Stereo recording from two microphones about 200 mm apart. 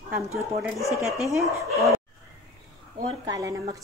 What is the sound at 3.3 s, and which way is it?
Speech, 15° right (ahead or behind).